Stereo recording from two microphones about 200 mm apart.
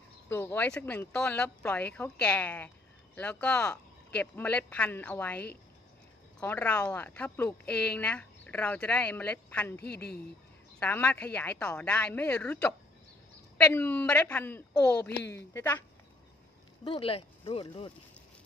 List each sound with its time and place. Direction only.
0.3 s speech: 10° left (ahead or behind)
10.8 s speech: 10° left (ahead or behind)
16.8 s speech: 25° left (ahead or behind)